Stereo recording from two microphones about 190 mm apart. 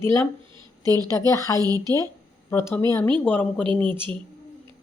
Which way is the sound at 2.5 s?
15° left (ahead or behind).